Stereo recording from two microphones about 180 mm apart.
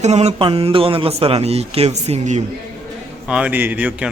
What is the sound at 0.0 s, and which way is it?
Speech, 35° right (ahead or behind).